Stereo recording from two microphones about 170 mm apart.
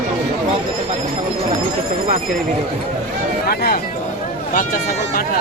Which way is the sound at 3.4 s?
65° left (ahead or behind).